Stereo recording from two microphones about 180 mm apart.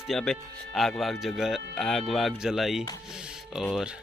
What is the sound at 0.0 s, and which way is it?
A man's voice, centre (ahead or behind).